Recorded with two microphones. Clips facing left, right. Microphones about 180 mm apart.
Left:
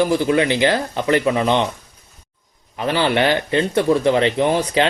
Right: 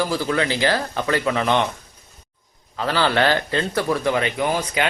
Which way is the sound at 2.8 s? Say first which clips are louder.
Left 2 dB; 20° left (ahead or behind).